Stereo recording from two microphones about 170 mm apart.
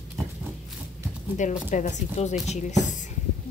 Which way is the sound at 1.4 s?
45° left (ahead or behind).